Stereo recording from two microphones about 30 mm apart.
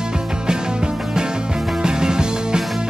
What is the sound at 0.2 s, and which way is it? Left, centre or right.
Music, right.